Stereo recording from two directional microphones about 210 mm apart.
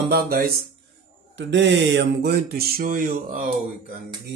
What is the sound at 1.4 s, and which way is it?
Speech, 60° right (ahead or behind).